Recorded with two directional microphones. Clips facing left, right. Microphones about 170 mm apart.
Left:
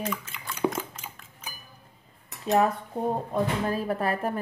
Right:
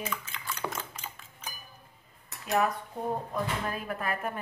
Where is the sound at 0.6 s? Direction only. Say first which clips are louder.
Left 12 dB; centre (ahead or behind).